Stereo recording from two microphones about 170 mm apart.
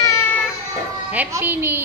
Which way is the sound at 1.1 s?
10° right (ahead or behind).